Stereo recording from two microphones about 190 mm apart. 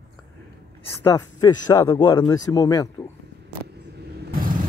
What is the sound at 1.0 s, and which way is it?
Speech, 20° left (ahead or behind).